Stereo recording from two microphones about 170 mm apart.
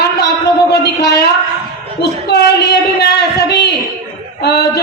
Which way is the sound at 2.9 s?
75° left (ahead or behind).